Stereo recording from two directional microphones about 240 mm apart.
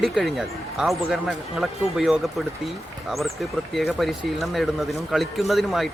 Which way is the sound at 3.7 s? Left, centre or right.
Centre.